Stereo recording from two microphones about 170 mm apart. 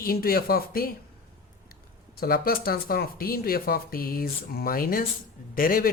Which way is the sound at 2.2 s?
60° left (ahead or behind).